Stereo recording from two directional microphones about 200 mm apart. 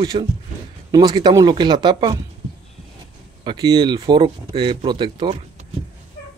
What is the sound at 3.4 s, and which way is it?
Speech, 20° right (ahead or behind).